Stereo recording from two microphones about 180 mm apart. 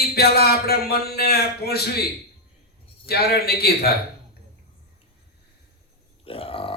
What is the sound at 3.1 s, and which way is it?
Speech, 60° left (ahead or behind).